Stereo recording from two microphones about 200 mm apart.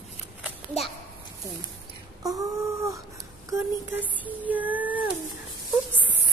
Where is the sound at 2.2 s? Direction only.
15° right (ahead or behind).